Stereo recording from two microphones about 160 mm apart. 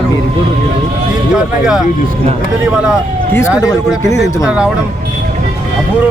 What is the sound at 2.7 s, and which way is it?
Speech, 5° right (ahead or behind).